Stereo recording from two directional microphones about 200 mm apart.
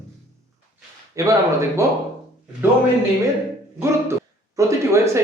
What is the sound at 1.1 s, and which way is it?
Speech, 15° right (ahead or behind).